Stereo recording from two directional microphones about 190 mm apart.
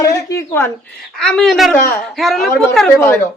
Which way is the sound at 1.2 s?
5° left (ahead or behind).